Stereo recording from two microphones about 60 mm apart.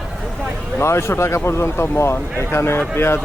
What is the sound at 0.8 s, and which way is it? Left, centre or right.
Speech, left.